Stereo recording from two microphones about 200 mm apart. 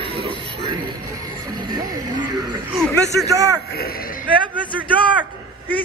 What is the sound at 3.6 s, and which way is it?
Speech, 50° left (ahead or behind).